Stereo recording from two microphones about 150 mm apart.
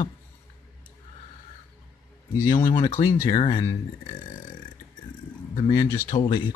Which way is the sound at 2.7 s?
25° left (ahead or behind).